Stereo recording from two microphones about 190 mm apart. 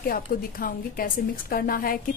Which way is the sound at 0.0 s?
50° left (ahead or behind).